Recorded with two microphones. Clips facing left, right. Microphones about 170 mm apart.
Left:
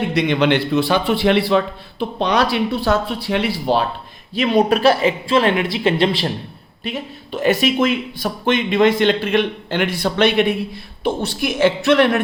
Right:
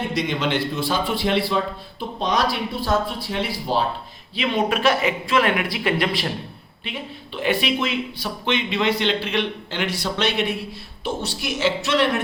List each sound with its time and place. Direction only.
0.1 s a man's voice: 65° left (ahead or behind)
4.4 s speech: 35° left (ahead or behind)
6.8 s speech: 40° left (ahead or behind)